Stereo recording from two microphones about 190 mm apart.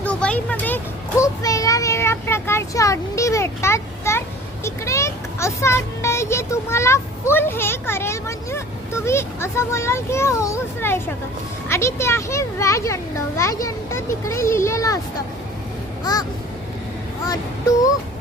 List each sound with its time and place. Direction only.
0.0 s a sound: 5° left (ahead or behind)
4.6 s a child's voice: 15° left (ahead or behind)
17.2 s child singing: 20° left (ahead or behind)